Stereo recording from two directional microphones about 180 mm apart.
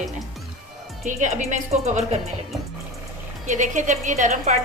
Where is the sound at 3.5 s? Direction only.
45° right (ahead or behind).